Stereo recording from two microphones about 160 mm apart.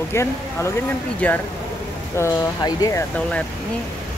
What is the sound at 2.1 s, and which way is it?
Speech, 20° left (ahead or behind).